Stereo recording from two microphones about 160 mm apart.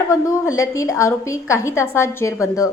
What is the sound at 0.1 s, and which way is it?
A woman's voice, 20° left (ahead or behind).